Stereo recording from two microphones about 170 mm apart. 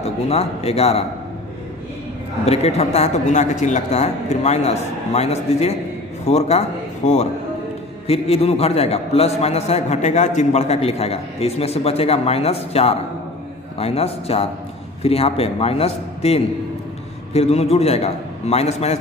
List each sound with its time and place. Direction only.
0.0 s a man's voice: 40° left (ahead or behind)
2.4 s a man's voice: 40° left (ahead or behind)